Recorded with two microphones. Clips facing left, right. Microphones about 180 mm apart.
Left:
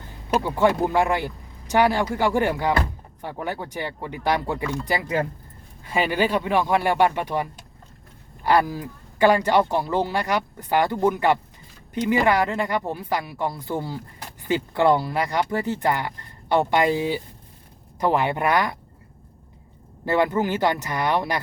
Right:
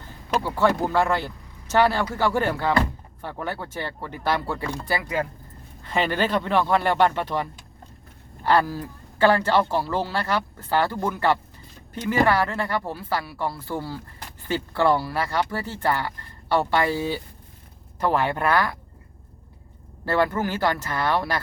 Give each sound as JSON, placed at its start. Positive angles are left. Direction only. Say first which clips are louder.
{"t": 0.3, "sound": "speech", "louder": "left 2 dB", "side_deg": 15}
{"t": 8.4, "sound": "speech", "louder": "left 1 dB", "side_deg": 15}
{"t": 20.1, "sound": "speech", "louder": "left 2 dB", "side_deg": 20}